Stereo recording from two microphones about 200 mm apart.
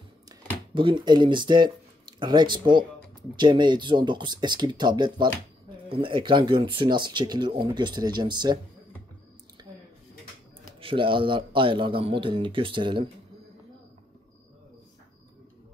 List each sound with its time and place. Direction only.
0.7 s speech: 25° right (ahead or behind)
9.6 s a sound: 20° right (ahead or behind)
10.8 s speech: 25° right (ahead or behind)